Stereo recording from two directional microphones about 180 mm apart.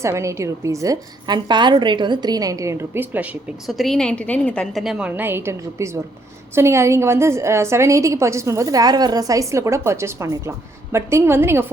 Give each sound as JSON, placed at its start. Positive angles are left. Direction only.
{"t": 0.0, "sound": "a woman's voice", "side_deg": -15}
{"t": 3.7, "sound": "a woman's voice", "side_deg": 0}